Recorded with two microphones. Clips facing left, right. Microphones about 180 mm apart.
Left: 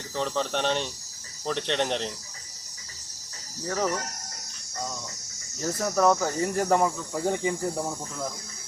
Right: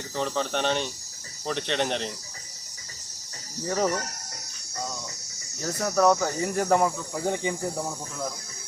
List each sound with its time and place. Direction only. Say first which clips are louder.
0.2 s speech: even; centre (ahead or behind)
3.7 s speech: right 2 dB; 20° right (ahead or behind)
5.5 s speech: right 1 dB; centre (ahead or behind)